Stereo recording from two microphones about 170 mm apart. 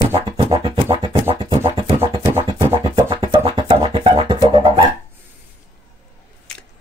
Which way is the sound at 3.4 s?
35° right (ahead or behind).